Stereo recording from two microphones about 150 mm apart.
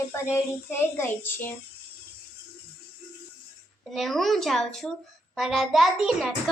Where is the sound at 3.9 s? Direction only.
Centre (ahead or behind).